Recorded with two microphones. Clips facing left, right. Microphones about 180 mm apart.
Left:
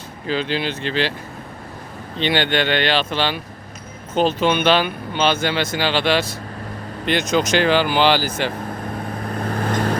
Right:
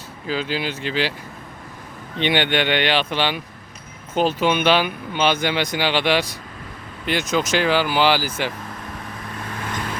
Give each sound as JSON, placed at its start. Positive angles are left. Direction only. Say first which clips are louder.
{"t": 0.3, "sound": "speech", "louder": "left 2 dB", "side_deg": -5}
{"t": 2.2, "sound": "speech", "louder": "left 1 dB", "side_deg": -15}
{"t": 8.4, "sound": "vehicle", "louder": "left 5 dB", "side_deg": 40}